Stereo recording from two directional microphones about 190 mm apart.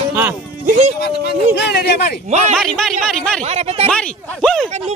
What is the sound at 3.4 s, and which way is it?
Speech, 35° right (ahead or behind).